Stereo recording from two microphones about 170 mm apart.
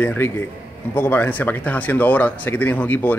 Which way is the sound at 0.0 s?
10° left (ahead or behind).